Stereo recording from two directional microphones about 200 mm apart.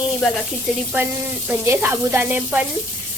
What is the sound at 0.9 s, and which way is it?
Sizzle, 10° right (ahead or behind).